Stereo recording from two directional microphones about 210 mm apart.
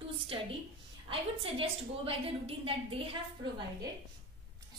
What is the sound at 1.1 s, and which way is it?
A woman's voice, 25° right (ahead or behind).